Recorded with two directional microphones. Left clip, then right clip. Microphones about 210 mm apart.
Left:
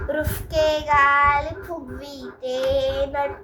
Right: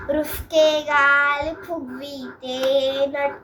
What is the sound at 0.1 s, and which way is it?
Child singing, 15° left (ahead or behind).